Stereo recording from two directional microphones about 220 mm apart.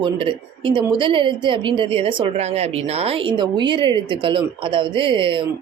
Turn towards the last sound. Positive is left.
turn(degrees=-20)  # may be behind; listen again after turning